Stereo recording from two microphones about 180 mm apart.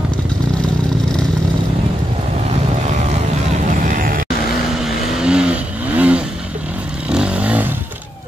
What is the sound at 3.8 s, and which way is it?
Music, 50° right (ahead or behind).